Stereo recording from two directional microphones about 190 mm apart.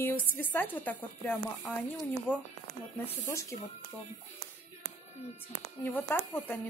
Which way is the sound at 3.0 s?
15° left (ahead or behind).